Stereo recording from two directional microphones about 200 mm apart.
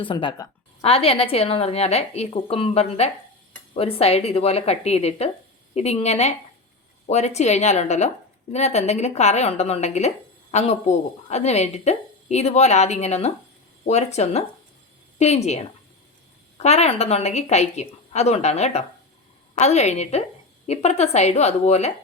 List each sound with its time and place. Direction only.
0.0 s a woman's voice: 25° left (ahead or behind)